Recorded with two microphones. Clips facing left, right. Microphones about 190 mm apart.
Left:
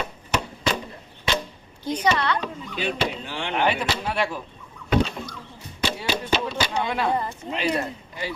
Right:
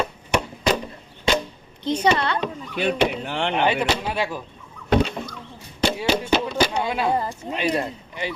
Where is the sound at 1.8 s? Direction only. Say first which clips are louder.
Right 3 dB; 25° right (ahead or behind).